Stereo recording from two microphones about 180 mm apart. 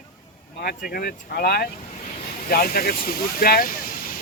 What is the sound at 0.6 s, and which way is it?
Speech, 55° left (ahead or behind).